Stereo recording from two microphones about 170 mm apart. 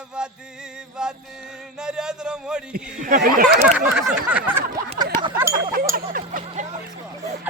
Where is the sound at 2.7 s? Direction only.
60° right (ahead or behind).